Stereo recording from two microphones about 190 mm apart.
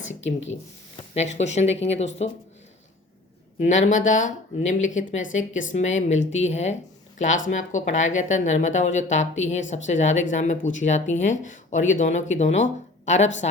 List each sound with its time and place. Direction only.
0.2 s speech: 75° left (ahead or behind)
0.9 s speech: 35° left (ahead or behind)
3.6 s speech: 40° left (ahead or behind)